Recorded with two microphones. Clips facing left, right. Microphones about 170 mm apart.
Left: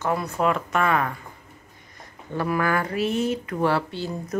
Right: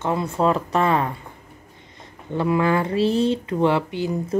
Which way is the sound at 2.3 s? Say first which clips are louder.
Right 4 dB; 20° right (ahead or behind).